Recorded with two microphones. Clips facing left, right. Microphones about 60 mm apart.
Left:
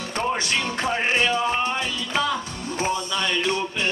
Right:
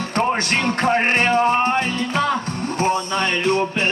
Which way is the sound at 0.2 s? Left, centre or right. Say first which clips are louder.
Right 5 dB; right.